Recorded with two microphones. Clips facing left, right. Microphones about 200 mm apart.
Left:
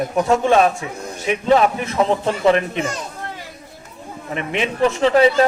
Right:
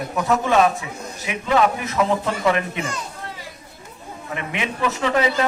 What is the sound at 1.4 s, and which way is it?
A man's voice, 30° left (ahead or behind).